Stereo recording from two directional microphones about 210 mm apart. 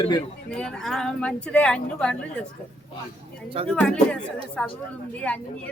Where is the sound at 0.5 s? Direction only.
5° left (ahead or behind).